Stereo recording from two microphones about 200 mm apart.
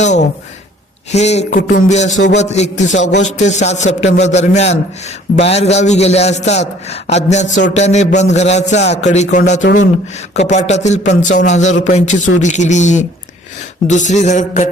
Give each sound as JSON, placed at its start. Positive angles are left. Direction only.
{"t": 0.0, "sound": "a man's voice", "side_deg": 35}